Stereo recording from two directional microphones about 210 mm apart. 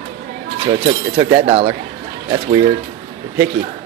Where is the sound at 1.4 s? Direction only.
30° right (ahead or behind).